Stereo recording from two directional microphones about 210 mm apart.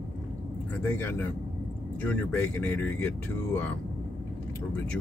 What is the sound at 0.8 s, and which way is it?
Speech, 10° left (ahead or behind).